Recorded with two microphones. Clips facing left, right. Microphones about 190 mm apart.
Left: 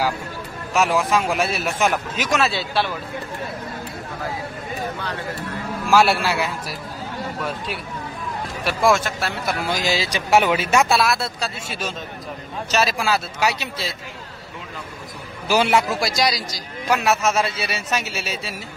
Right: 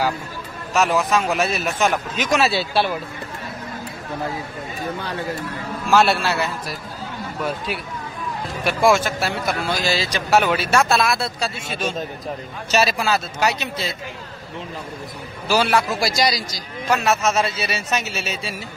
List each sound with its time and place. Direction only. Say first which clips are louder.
0.7 s a man's voice: even; 10° left (ahead or behind); by 2.9 s 10° right (ahead or behind)
5.9 s speech: even; 10° left (ahead or behind)
8.6 s a man's voice: right 2 dB; centre (ahead or behind)
9.7 s speech: even; 15° left (ahead or behind)
11.1 s a man's voice: right 1 dB; centre (ahead or behind)
15.4 s speech: left 1 dB; 15° left (ahead or behind)
16.0 s a man's voice: right 1 dB; centre (ahead or behind)